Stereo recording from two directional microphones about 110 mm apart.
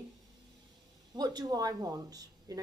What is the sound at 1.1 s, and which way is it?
A woman's voice, 35° right (ahead or behind).